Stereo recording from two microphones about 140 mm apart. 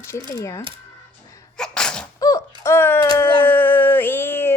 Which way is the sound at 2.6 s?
15° left (ahead or behind).